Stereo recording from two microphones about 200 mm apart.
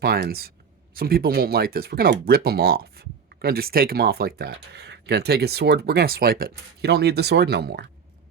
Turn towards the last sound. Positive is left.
turn(degrees=-55)  # may be behind; listen again after turning